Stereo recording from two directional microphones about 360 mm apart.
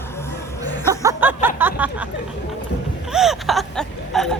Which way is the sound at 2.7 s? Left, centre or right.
Left.